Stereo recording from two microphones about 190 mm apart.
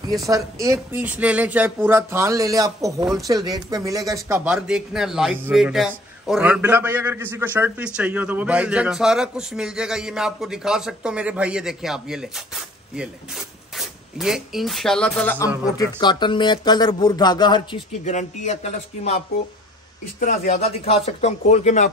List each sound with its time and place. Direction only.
0.2 s speech: 20° right (ahead or behind); by 12.4 s 5° right (ahead or behind)
13.7 s speech: centre (ahead or behind)
15.4 s speech: 20° left (ahead or behind)
18.0 s speech: 40° left (ahead or behind)